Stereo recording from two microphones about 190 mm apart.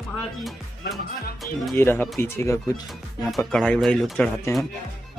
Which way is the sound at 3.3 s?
Centre (ahead or behind).